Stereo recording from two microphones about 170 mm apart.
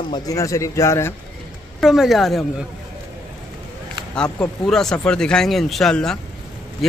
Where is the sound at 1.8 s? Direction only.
Centre (ahead or behind).